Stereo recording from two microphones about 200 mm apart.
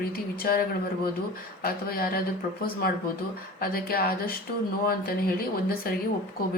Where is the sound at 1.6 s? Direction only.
50° left (ahead or behind).